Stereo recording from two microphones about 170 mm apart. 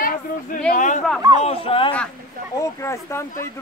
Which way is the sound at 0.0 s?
55° left (ahead or behind).